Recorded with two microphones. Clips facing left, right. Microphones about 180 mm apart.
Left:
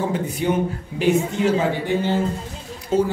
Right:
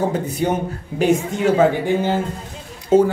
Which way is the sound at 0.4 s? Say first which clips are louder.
Left 2 dB; 40° right (ahead or behind).